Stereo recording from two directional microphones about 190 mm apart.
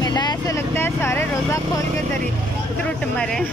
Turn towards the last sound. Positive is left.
turn(degrees=5)  # may be behind; listen again after turning